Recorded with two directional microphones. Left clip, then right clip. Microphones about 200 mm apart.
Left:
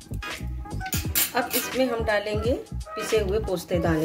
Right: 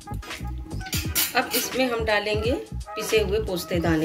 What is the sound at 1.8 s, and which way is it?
A woman's voice, 30° left (ahead or behind).